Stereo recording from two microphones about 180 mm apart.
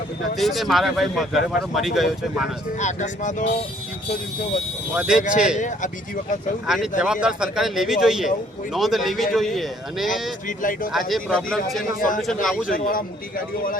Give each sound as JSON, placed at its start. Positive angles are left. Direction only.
{"t": 0.3, "sound": "speech", "side_deg": 0}
{"t": 2.7, "sound": "speech", "side_deg": 40}
{"t": 4.9, "sound": "speech", "side_deg": -5}
{"t": 5.5, "sound": "a man's voice", "side_deg": 45}
{"t": 6.7, "sound": "speech", "side_deg": 0}
{"t": 11.9, "sound": "a man's voice", "side_deg": 50}
{"t": 12.2, "sound": "speech", "side_deg": 0}
{"t": 12.6, "sound": "a man's voice", "side_deg": 50}